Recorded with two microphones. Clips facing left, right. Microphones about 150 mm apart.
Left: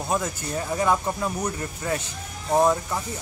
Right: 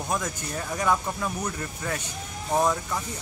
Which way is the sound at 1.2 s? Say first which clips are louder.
Left 3 dB; 25° left (ahead or behind).